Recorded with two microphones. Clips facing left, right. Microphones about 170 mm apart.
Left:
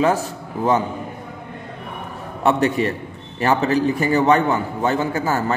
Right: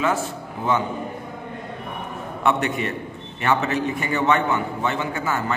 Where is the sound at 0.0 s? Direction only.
35° left (ahead or behind).